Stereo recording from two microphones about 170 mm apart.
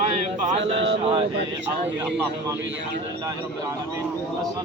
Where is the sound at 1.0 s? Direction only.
35° right (ahead or behind).